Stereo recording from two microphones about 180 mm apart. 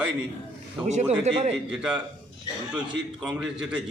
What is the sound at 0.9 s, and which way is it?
Speech, 40° right (ahead or behind).